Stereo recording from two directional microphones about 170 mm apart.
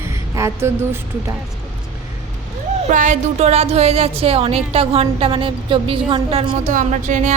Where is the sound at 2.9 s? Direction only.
45° right (ahead or behind).